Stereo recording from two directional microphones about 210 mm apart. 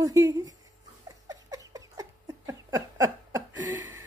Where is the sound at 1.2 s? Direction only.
15° right (ahead or behind).